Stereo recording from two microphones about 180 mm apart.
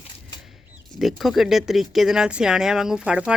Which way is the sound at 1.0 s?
Centre (ahead or behind).